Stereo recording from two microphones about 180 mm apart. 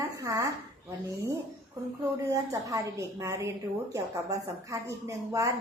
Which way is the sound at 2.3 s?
20° right (ahead or behind).